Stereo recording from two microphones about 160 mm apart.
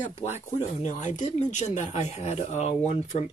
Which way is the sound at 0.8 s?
50° left (ahead or behind).